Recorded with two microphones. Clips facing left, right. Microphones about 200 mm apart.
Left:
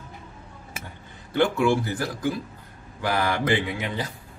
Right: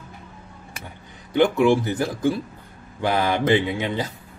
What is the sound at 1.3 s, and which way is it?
Speech, 20° right (ahead or behind).